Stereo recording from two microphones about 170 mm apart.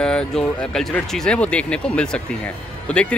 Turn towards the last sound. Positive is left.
turn(degrees=5)  # may be behind; listen again after turning